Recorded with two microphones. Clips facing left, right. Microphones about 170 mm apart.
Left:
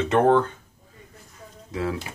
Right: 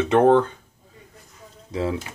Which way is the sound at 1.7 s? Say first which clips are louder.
Right 2 dB; 25° right (ahead or behind).